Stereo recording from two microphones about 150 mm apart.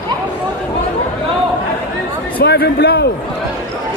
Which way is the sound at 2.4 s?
90° left.